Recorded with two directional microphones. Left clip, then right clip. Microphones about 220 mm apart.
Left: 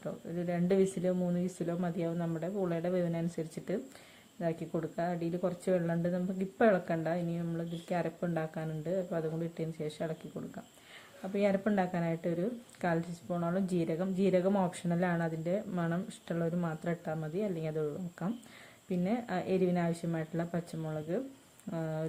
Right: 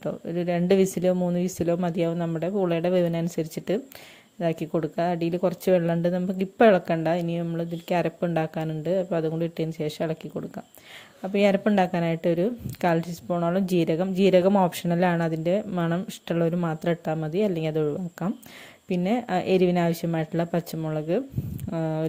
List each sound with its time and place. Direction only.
0.0 s speech: 40° right (ahead or behind)